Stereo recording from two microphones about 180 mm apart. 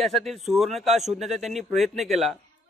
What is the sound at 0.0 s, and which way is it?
A man's voice, centre (ahead or behind).